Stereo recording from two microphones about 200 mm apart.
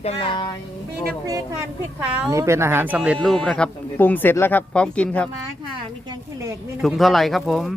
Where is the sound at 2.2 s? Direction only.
15° right (ahead or behind); by 5.2 s 5° left (ahead or behind).